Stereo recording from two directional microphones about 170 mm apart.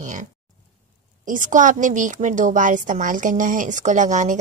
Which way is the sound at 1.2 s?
50° right (ahead or behind).